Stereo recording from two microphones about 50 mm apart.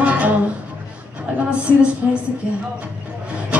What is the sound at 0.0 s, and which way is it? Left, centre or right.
Music, right.